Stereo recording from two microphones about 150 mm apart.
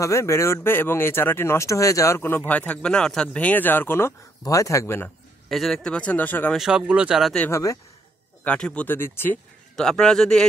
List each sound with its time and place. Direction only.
0.0 s speech: 20° left (ahead or behind)
5.5 s speech: centre (ahead or behind)
6.5 s speech: 5° right (ahead or behind)
7.4 s speech: 20° left (ahead or behind)
8.5 s speech: 5° left (ahead or behind)
9.8 s speech: 5° left (ahead or behind)